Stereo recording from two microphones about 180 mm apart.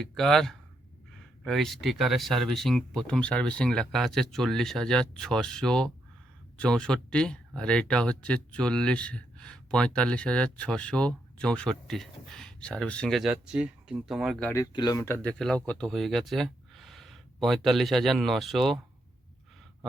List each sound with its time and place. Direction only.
0.0 s speech: centre (ahead or behind)